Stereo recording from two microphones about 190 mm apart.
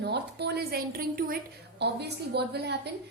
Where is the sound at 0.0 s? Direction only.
60° right (ahead or behind).